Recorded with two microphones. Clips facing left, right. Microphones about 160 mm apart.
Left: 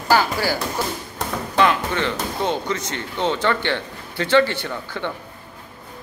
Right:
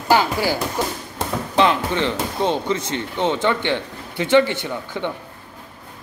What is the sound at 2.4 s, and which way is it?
Speech, 25° right (ahead or behind).